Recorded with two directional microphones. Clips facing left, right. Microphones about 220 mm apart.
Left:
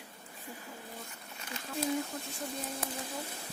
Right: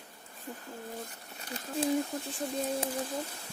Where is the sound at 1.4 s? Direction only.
35° right (ahead or behind).